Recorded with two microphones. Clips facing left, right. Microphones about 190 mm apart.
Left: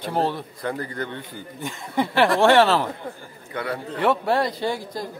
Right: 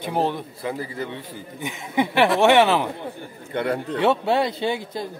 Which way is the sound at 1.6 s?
20° right (ahead or behind).